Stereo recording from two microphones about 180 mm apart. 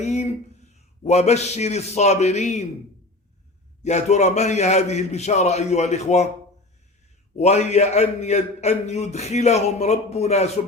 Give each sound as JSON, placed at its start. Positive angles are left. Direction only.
{"t": 0.0, "sound": "a sound", "side_deg": 40}
{"t": 1.0, "sound": "a man's voice", "side_deg": 40}
{"t": 3.8, "sound": "a man's voice", "side_deg": 40}
{"t": 7.3, "sound": "a man's voice", "side_deg": 35}